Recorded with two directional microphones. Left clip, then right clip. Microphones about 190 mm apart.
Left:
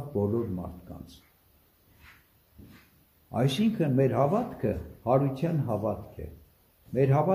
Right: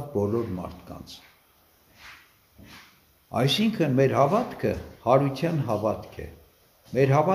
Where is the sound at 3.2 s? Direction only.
10° right (ahead or behind).